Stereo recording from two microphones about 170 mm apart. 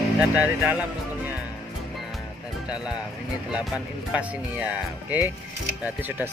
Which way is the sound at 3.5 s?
5° right (ahead or behind).